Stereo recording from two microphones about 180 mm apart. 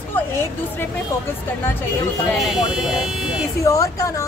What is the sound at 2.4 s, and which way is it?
Speech, centre (ahead or behind).